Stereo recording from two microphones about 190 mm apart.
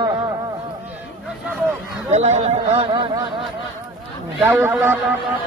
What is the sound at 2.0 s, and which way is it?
Speech, 35° right (ahead or behind).